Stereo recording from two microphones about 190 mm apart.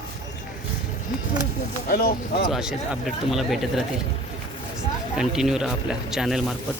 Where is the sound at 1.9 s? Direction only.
50° left (ahead or behind).